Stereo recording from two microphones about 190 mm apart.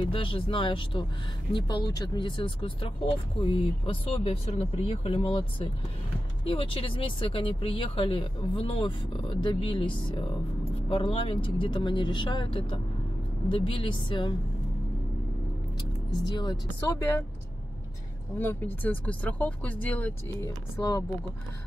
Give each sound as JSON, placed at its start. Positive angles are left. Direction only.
{"t": 0.0, "sound": "speech", "side_deg": 30}
{"t": 16.3, "sound": "speech", "side_deg": 20}
{"t": 18.4, "sound": "speech", "side_deg": 10}